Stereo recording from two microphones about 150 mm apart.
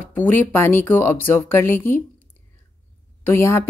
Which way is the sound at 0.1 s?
10° left (ahead or behind).